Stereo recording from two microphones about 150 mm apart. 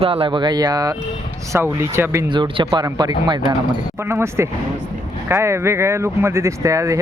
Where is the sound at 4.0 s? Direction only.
15° right (ahead or behind).